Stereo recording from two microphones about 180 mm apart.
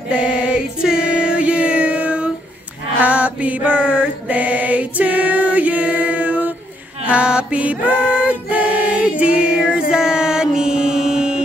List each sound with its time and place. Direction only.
0.1 s music: 5° right (ahead or behind)
3.0 s mantra: 5° right (ahead or behind)
7.1 s choir: 5° right (ahead or behind)